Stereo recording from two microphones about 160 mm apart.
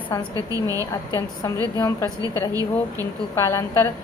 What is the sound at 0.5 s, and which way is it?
A woman's voice, 20° right (ahead or behind).